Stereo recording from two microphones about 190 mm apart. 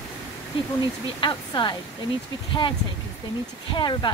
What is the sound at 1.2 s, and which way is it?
Speech, 25° left (ahead or behind).